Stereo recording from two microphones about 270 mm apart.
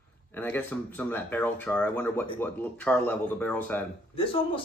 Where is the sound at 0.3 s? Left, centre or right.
Centre.